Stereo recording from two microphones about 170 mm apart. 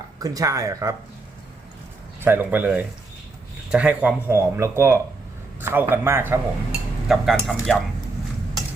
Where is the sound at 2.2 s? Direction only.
10° right (ahead or behind).